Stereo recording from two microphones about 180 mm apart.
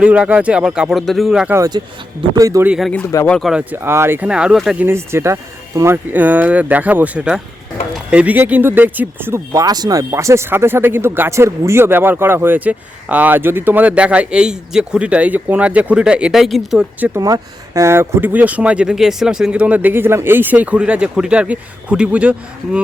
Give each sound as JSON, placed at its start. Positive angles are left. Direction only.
{"t": 0.0, "sound": "speech", "side_deg": -5}
{"t": 1.5, "sound": "speech", "side_deg": -20}
{"t": 2.6, "sound": "speech", "side_deg": -5}
{"t": 2.9, "sound": "speech", "side_deg": 15}
{"t": 3.2, "sound": "speech", "side_deg": 0}
{"t": 4.9, "sound": "speech", "side_deg": -15}
{"t": 17.2, "sound": "speech", "side_deg": -20}